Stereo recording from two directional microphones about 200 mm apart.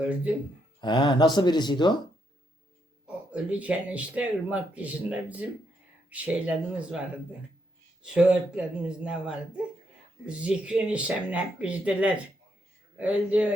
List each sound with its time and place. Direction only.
0.0 s speech: 5° right (ahead or behind)
0.8 s speech: 20° left (ahead or behind)
3.3 s speech: 5° right (ahead or behind)
8.0 s speech: 5° right (ahead or behind)